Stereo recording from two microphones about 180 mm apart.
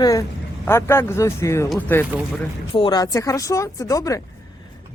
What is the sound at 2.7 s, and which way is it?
Speech, 25° left (ahead or behind).